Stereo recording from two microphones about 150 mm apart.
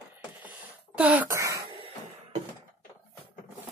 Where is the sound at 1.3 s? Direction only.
20° right (ahead or behind).